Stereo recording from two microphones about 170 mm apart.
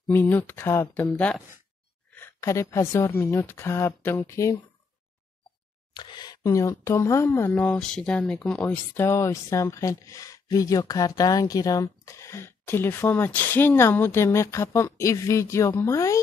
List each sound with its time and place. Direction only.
0.1 s speech: 10° left (ahead or behind)
5.9 s speech: 25° left (ahead or behind)